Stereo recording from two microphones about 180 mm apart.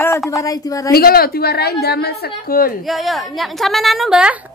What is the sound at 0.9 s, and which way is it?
A woman's voice, 55° left (ahead or behind).